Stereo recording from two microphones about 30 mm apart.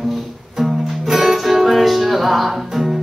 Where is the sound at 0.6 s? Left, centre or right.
Centre.